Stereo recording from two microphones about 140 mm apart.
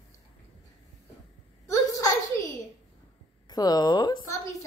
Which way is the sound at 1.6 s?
25° left (ahead or behind).